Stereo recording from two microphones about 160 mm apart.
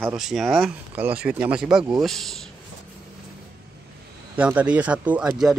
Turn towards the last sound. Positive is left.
turn(degrees=-5)  # may be behind; listen again after turning